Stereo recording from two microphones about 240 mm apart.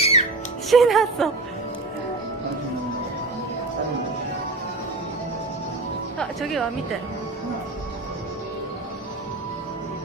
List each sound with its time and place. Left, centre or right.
0.0 s music: left
0.7 s speech: centre
6.1 s speech: centre